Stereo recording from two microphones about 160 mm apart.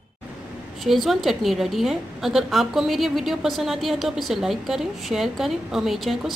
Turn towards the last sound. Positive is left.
turn(degrees=0)  # may be behind; listen again after turning